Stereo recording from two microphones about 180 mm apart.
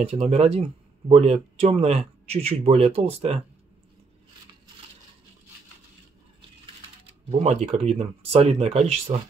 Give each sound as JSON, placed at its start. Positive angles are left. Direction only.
{"t": 0.0, "sound": "speech", "side_deg": -35}
{"t": 6.6, "sound": "speech", "side_deg": -30}